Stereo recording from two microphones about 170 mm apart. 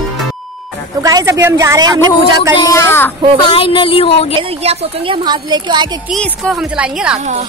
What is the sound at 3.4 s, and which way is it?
Speech, 30° left (ahead or behind).